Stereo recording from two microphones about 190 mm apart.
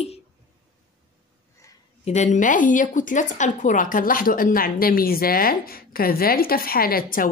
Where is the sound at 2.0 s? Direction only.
40° left (ahead or behind).